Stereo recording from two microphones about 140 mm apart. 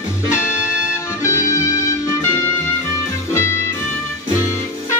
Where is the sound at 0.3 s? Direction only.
20° left (ahead or behind).